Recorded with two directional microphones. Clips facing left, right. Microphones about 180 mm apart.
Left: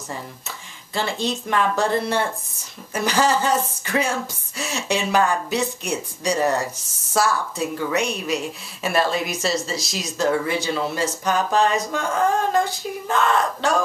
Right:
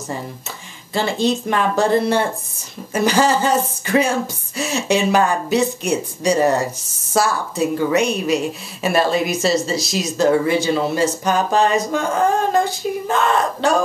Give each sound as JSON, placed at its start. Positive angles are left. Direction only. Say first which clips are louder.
{"t": 0.9, "sound": "speech", "louder": "right 6 dB", "side_deg": -30}